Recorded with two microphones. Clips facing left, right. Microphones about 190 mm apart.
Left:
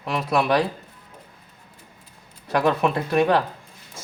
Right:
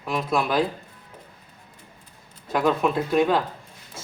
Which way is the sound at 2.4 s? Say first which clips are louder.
Left 1 dB; 70° left (ahead or behind).